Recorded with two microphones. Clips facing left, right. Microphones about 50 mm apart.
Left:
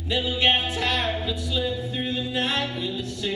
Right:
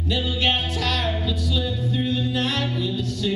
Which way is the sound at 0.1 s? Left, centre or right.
Left.